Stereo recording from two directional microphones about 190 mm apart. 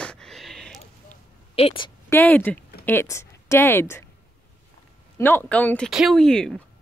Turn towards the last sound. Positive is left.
turn(degrees=5)  # may be behind; listen again after turning